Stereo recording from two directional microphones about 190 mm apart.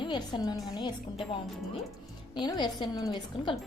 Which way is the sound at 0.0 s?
25° left (ahead or behind).